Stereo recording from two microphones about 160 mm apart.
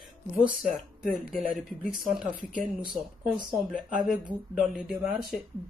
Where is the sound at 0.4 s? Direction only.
Centre (ahead or behind).